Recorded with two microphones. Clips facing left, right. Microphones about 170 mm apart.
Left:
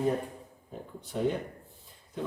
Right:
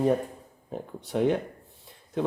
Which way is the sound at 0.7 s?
75° right (ahead or behind).